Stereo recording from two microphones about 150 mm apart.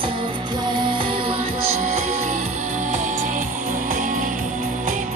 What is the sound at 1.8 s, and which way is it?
Music, 50° right (ahead or behind).